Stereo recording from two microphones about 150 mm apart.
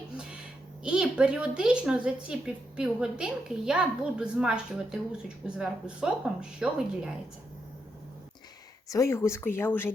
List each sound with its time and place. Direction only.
0.9 s a woman's voice: 5° right (ahead or behind)
8.9 s speech: 20° left (ahead or behind)